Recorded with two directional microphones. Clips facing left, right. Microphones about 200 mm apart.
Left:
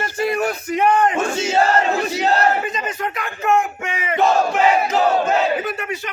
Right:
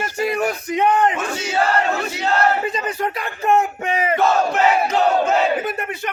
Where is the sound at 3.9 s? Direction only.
35° right (ahead or behind).